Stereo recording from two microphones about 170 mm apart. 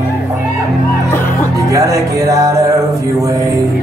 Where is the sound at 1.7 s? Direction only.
20° right (ahead or behind).